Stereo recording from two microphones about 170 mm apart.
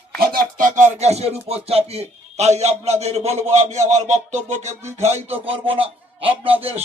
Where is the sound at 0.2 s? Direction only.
55° right (ahead or behind).